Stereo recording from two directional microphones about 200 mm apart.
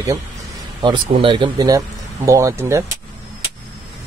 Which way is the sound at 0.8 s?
25° right (ahead or behind).